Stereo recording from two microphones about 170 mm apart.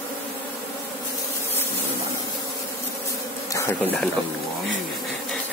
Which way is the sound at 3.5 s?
15° left (ahead or behind).